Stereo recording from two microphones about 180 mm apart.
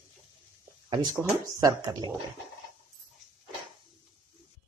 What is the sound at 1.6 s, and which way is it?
Speech, 20° right (ahead or behind).